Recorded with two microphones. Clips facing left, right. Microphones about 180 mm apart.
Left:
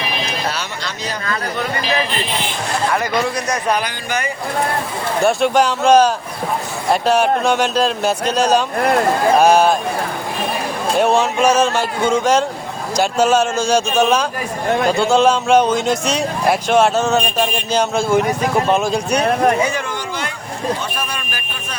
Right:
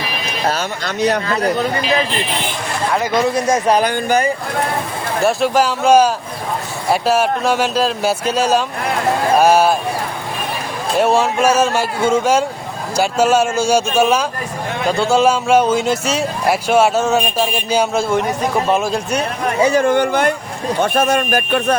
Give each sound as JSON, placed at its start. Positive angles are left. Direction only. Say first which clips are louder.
{"t": 0.4, "sound": "a sound", "louder": "right 4 dB", "side_deg": -45}
{"t": 3.0, "sound": "speech", "louder": "right 3 dB", "side_deg": -25}
{"t": 3.8, "sound": "speech", "louder": "right 7 dB", "side_deg": -40}
{"t": 5.2, "sound": "a man's voice", "louder": "even", "side_deg": 0}
{"t": 10.9, "sound": "a man's voice", "louder": "right 1 dB", "side_deg": -5}
{"t": 19.8, "sound": "speech", "louder": "right 11 dB", "side_deg": -55}